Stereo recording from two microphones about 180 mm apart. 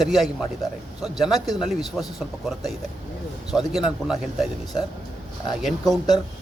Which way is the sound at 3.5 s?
5° right (ahead or behind).